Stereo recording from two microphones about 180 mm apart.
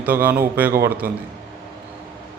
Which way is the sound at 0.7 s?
55° right (ahead or behind).